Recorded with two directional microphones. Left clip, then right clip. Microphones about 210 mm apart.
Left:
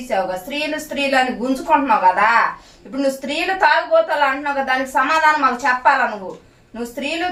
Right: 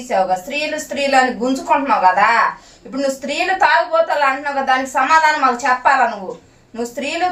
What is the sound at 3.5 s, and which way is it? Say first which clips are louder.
A woman's voice: even; 15° right (ahead or behind).